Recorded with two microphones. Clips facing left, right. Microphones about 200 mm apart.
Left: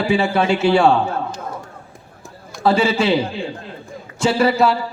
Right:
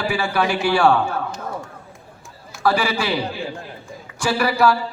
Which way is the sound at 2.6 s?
25° left (ahead or behind).